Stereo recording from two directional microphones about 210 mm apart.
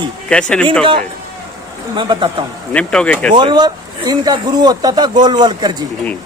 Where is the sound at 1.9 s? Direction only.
20° right (ahead or behind).